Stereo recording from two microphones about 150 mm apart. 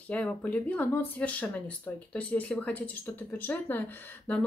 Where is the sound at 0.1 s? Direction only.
10° left (ahead or behind).